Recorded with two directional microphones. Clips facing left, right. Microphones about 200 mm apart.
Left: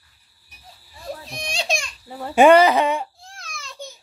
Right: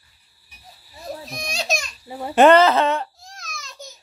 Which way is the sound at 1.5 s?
30° left (ahead or behind).